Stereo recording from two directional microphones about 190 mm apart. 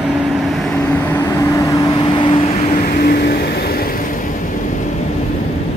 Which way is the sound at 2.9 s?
55° left (ahead or behind).